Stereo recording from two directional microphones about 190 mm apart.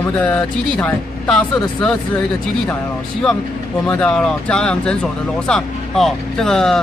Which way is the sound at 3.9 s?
5° left (ahead or behind).